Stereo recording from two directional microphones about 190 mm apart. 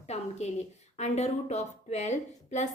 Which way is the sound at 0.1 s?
35° left (ahead or behind).